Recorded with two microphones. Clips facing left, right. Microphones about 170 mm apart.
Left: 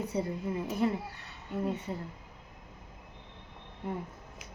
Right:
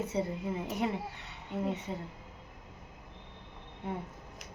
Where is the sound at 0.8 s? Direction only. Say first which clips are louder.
Left 3 dB; 20° right (ahead or behind).